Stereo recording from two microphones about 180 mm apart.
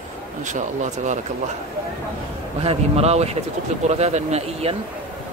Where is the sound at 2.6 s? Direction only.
35° right (ahead or behind).